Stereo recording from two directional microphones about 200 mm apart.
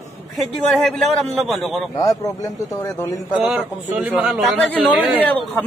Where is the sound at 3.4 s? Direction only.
5° right (ahead or behind).